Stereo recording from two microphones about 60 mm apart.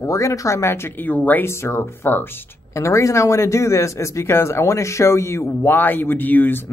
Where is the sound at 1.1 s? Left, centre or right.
Left.